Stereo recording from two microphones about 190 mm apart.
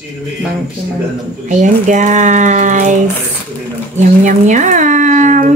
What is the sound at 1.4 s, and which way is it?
Speech, 40° right (ahead or behind).